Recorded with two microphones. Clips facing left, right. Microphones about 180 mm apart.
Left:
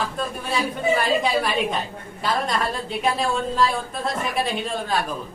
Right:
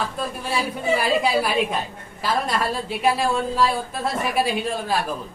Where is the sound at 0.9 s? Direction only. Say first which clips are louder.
Right 3 dB; 5° right (ahead or behind).